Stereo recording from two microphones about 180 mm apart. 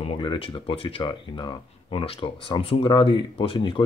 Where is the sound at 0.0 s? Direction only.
30° left (ahead or behind).